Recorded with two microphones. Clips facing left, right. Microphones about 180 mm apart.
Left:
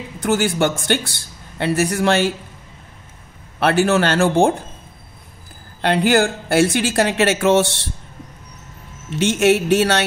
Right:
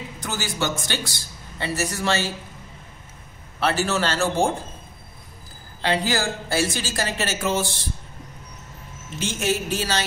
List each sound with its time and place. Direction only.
0.2 s a man's voice: 55° left (ahead or behind)
3.5 s a man's voice: 60° left (ahead or behind)
5.8 s a man's voice: 60° left (ahead or behind)
9.1 s speech: 70° left (ahead or behind)